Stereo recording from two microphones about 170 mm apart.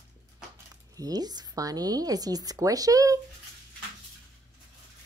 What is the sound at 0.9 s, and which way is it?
Speech, 20° right (ahead or behind).